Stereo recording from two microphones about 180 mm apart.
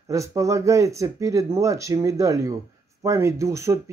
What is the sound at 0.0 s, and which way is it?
A man's voice, 15° right (ahead or behind).